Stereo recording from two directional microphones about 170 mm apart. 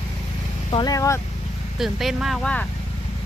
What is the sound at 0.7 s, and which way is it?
Speech, 25° left (ahead or behind).